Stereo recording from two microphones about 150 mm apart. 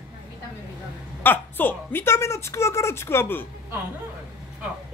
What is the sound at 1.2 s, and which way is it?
A woman's voice, 15° left (ahead or behind).